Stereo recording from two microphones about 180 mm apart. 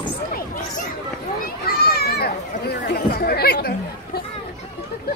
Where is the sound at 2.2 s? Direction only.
60° left (ahead or behind).